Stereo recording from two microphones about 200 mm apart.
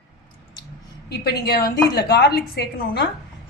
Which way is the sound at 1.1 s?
50° left (ahead or behind).